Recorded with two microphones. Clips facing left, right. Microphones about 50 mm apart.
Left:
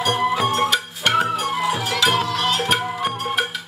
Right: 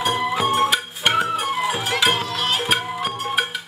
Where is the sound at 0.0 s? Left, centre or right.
Centre.